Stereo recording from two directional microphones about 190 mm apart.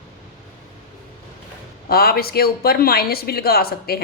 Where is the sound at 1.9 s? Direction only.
55° left (ahead or behind).